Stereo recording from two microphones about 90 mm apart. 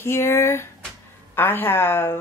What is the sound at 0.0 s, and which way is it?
Speech, 30° left (ahead or behind).